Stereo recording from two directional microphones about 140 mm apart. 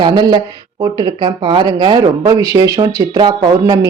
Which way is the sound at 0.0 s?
30° right (ahead or behind).